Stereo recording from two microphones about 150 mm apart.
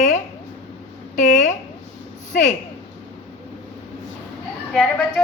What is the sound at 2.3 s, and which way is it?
Speech, 60° left (ahead or behind).